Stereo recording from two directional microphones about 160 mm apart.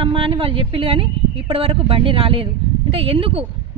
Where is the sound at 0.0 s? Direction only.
35° right (ahead or behind).